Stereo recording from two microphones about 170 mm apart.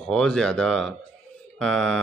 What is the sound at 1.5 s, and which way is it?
Mantra, 5° left (ahead or behind).